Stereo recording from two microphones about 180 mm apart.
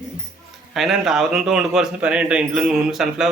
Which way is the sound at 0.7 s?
Centre (ahead or behind).